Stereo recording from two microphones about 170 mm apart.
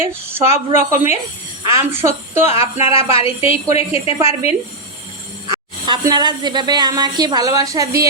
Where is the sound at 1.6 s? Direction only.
15° right (ahead or behind).